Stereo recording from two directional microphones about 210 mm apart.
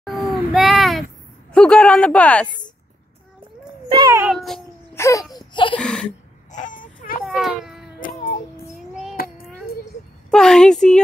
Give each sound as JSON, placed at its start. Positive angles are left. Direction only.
{"t": 0.0, "sound": "a sound", "side_deg": 0}
{"t": 1.5, "sound": "speech", "side_deg": 5}
{"t": 3.9, "sound": "music", "side_deg": -15}
{"t": 4.4, "sound": "speech", "side_deg": 0}
{"t": 4.9, "sound": "baby cry", "side_deg": 15}
{"t": 5.5, "sound": "speech", "side_deg": 25}
{"t": 5.8, "sound": "speech", "side_deg": 5}
{"t": 6.5, "sound": "a sound", "side_deg": 35}
{"t": 7.2, "sound": "cat", "side_deg": 0}
{"t": 8.7, "sound": "child singing", "side_deg": 0}
{"t": 9.1, "sound": "child singing", "side_deg": 45}
{"t": 10.3, "sound": "speech", "side_deg": 5}